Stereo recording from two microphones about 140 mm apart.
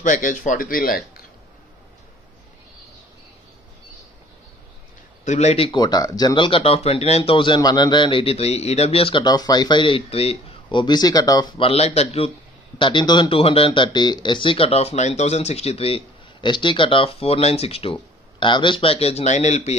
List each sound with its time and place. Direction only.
0.0 s speech: 65° left (ahead or behind); by 0.9 s 90° left
5.2 s speech: 55° left (ahead or behind)
12.7 s speech: 35° left (ahead or behind); by 19.8 s 55° left (ahead or behind)